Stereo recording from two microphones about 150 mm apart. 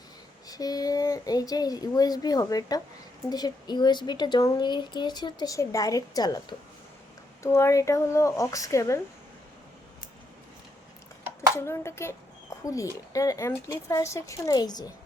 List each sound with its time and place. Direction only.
0.4 s speech: 25° left (ahead or behind)
11.5 s speech: 20° left (ahead or behind)